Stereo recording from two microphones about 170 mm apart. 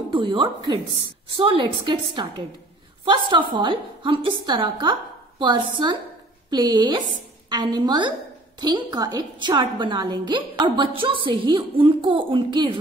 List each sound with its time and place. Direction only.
0.1 s a woman's voice: 25° right (ahead or behind)